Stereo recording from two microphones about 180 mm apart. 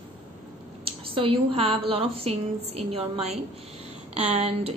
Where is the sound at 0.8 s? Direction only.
30° right (ahead or behind).